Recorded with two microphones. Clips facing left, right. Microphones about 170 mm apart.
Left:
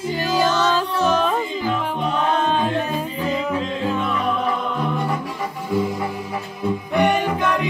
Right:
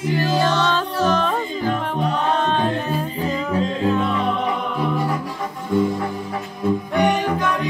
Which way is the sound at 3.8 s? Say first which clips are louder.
Right 1 dB; 5° left (ahead or behind).